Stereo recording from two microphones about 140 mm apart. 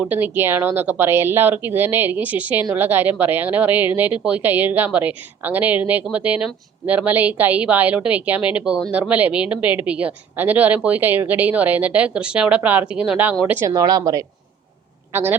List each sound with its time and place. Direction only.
0.0 s speech: 15° right (ahead or behind)
13.7 s a woman's voice: 25° right (ahead or behind)
15.1 s a woman's voice: 15° right (ahead or behind)